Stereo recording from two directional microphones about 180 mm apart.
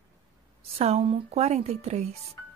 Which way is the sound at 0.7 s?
35° right (ahead or behind).